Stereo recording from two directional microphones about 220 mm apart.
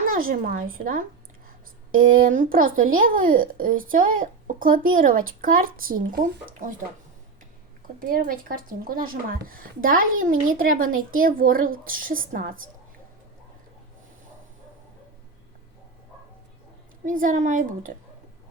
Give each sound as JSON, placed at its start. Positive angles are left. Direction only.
{"t": 0.0, "sound": "speech", "side_deg": -40}
{"t": 7.9, "sound": "speech", "side_deg": -40}
{"t": 17.1, "sound": "speech", "side_deg": -40}